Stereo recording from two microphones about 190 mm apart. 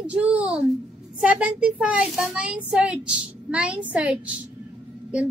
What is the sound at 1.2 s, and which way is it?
A woman's voice, 5° right (ahead or behind).